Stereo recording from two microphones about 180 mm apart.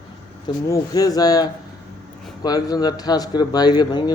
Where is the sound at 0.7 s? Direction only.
20° left (ahead or behind).